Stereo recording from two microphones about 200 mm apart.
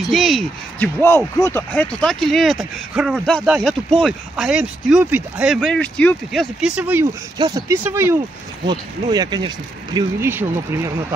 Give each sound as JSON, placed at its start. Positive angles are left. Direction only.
{"t": 0.0, "sound": "speech", "side_deg": 0}